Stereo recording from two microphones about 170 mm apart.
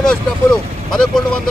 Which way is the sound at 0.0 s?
5° left (ahead or behind).